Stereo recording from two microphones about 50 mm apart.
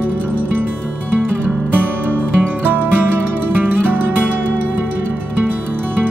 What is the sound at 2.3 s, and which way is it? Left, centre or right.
Music, right.